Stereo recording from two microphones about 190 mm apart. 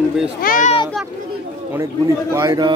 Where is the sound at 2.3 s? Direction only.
25° right (ahead or behind).